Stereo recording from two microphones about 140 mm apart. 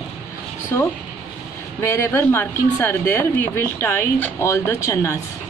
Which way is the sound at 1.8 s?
20° left (ahead or behind).